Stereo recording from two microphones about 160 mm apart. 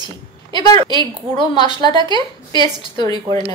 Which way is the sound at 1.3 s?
30° left (ahead or behind).